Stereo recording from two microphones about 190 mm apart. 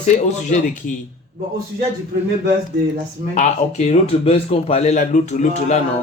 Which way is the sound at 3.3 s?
40° left (ahead or behind).